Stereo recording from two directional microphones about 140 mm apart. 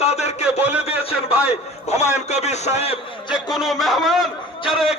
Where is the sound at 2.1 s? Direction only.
55° left (ahead or behind).